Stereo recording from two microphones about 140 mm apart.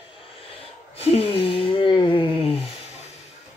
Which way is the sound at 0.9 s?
45° left (ahead or behind).